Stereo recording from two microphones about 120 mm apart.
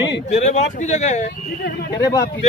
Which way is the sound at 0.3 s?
70° left (ahead or behind).